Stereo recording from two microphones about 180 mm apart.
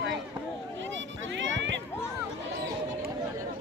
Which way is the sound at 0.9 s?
90° right.